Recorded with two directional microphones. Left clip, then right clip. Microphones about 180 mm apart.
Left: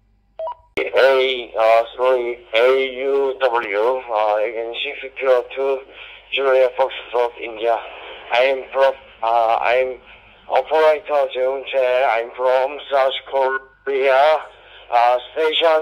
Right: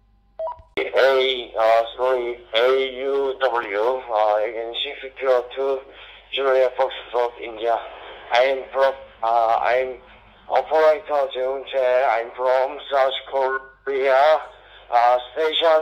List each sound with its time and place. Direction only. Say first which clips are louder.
0.7 s a man's voice: left 3 dB; 50° left (ahead or behind)